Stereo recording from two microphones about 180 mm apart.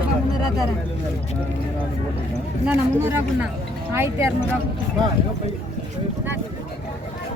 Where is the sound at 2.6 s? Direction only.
10° right (ahead or behind).